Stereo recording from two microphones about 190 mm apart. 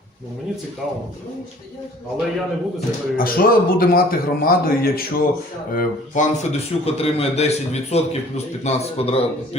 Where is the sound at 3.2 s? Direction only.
50° left (ahead or behind).